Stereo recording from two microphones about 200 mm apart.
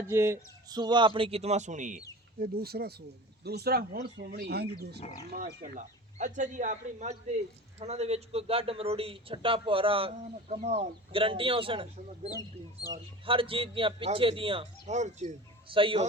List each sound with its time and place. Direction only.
0.1 s a man's voice: 15° right (ahead or behind); by 2.0 s 40° right (ahead or behind)
2.4 s speech: 50° right (ahead or behind)
5.6 s a man's voice: 40° right (ahead or behind)